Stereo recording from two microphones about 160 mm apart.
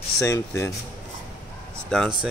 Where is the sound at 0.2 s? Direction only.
15° left (ahead or behind).